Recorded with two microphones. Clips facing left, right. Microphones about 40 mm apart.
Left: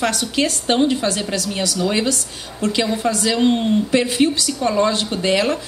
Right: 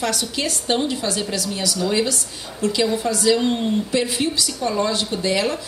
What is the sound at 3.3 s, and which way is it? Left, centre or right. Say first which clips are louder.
Speech: left 3 dB; left.